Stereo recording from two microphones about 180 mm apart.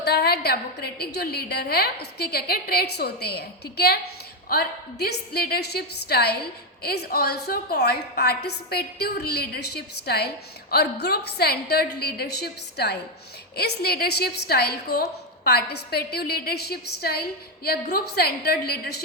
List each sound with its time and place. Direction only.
0.0 s a woman's voice: 60° left (ahead or behind)